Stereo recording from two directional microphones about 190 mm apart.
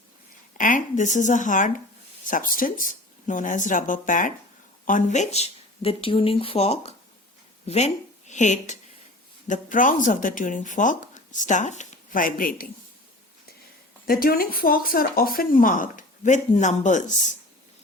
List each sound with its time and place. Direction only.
0.5 s speech: 45° left (ahead or behind)
14.1 s speech: 50° left (ahead or behind)